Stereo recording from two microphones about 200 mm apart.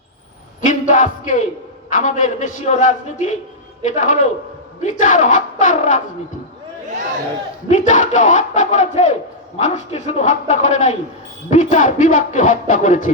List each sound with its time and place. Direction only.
0.6 s music: 40° left (ahead or behind)
1.9 s speech: 40° left (ahead or behind)
7.7 s speech: 40° left (ahead or behind)